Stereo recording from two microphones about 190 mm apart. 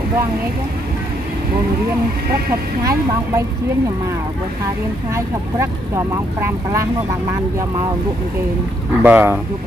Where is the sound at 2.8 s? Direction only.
15° right (ahead or behind).